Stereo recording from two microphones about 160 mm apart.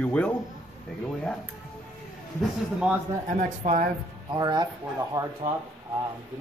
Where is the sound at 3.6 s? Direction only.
45° right (ahead or behind).